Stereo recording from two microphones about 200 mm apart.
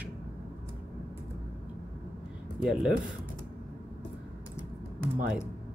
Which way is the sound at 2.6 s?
Centre (ahead or behind).